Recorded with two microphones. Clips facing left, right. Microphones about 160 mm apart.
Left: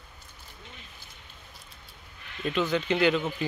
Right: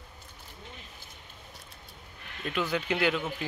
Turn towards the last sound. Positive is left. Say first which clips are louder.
# left 4 dB
turn(degrees=0)  # may be behind; listen again after turning